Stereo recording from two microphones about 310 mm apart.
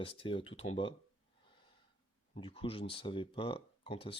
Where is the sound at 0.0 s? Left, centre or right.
Centre.